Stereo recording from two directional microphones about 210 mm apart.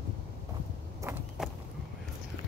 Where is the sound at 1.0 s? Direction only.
15° right (ahead or behind).